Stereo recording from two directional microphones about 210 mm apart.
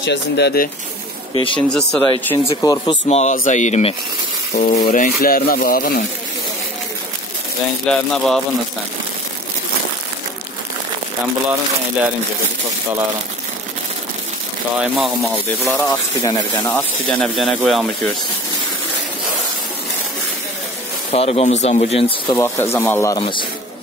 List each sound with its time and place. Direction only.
0.0 s speech: 55° left (ahead or behind)
1.3 s speech: 25° left (ahead or behind)
1.7 s speech: 5° left (ahead or behind)
2.4 s speech: 20° left (ahead or behind)
3.1 s speech: 30° left (ahead or behind)
7.8 s speech: 5° left (ahead or behind)
14.8 s speech: 5° right (ahead or behind)
15.8 s speech: 20° left (ahead or behind)
16.7 s speech: centre (ahead or behind)
21.1 s speech: 30° left (ahead or behind)
22.4 s speech: 10° left (ahead or behind)